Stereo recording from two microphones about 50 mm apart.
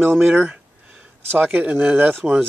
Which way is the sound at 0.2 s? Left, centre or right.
Right.